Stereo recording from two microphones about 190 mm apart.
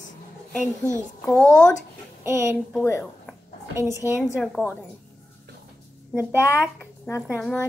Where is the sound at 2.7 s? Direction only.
10° left (ahead or behind).